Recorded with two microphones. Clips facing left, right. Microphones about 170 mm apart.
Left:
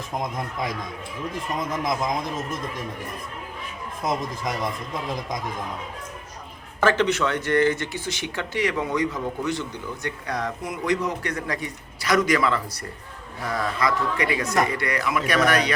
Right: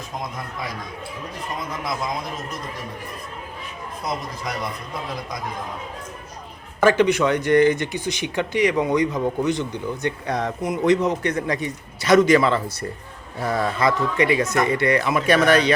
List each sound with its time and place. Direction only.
6.7 s speech: 15° right (ahead or behind); by 15.7 s 30° right (ahead or behind)